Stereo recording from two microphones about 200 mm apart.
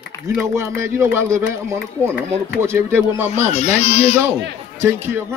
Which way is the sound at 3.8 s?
30° left (ahead or behind).